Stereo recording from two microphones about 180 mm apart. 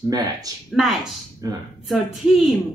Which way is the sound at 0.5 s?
20° right (ahead or behind).